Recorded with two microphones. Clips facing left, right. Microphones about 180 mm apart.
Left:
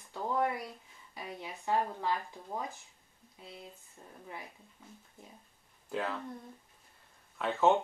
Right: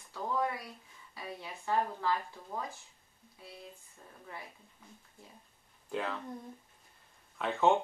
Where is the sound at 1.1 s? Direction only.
20° left (ahead or behind).